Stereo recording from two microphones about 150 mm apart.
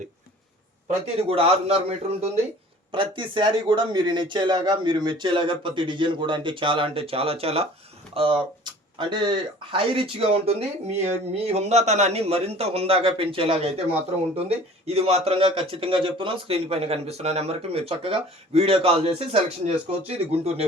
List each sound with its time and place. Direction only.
0.9 s a man's voice: 45° right (ahead or behind)
2.9 s speech: 35° right (ahead or behind)